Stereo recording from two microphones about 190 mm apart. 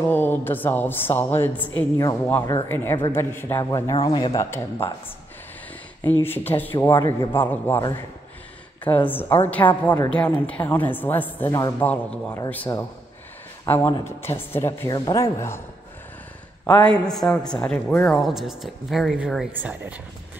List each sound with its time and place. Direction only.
0.0 s a woman's voice: 10° left (ahead or behind)
6.2 s a woman's voice: 10° left (ahead or behind)
8.8 s a woman's voice: 10° left (ahead or behind)
16.6 s a man's voice: 5° left (ahead or behind); by 20.0 s 10° right (ahead or behind)